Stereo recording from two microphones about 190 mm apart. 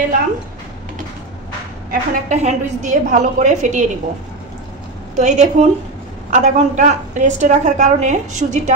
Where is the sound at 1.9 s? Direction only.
35° right (ahead or behind).